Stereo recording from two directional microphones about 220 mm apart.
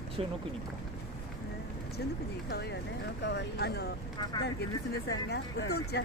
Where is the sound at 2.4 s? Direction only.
45° left (ahead or behind).